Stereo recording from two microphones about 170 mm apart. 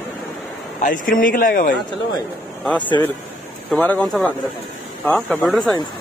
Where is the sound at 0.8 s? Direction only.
50° left (ahead or behind).